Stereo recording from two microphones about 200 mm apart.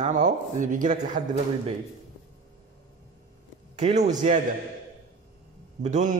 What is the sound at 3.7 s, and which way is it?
Speech, 35° right (ahead or behind).